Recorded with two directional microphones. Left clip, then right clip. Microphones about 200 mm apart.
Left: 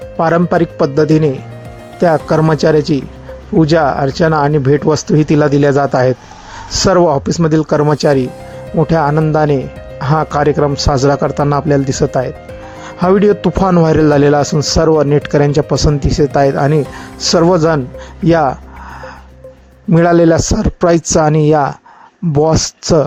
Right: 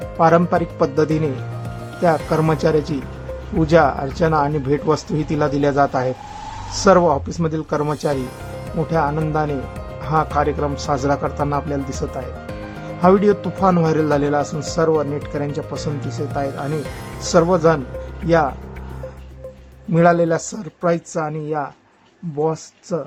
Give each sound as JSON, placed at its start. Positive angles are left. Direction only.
{"t": 0.2, "sound": "speech", "side_deg": 25}
{"t": 19.9, "sound": "speech", "side_deg": 40}